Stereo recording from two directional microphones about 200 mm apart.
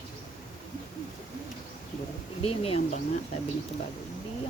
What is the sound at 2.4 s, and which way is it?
Speech, 30° left (ahead or behind).